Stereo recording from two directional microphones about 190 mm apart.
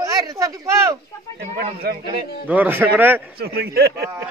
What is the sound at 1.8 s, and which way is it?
Speech, 55° right (ahead or behind).